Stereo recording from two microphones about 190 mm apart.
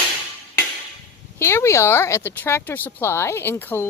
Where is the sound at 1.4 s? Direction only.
15° left (ahead or behind).